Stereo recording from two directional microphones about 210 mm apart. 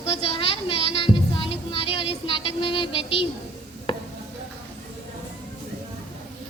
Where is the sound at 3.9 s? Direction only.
25° left (ahead or behind).